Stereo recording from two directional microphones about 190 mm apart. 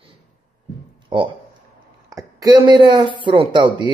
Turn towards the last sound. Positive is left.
turn(degrees=-25)  # may be behind; listen again after turning